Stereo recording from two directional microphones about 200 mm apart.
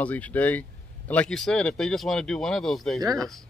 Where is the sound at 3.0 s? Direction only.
15° right (ahead or behind).